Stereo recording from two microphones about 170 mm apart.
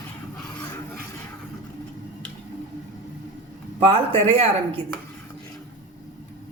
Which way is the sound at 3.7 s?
30° right (ahead or behind).